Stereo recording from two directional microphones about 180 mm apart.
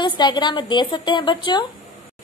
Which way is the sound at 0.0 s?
25° left (ahead or behind).